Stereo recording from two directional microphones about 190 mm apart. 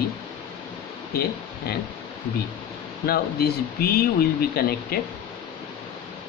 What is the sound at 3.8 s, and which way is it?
Speech, 55° left (ahead or behind).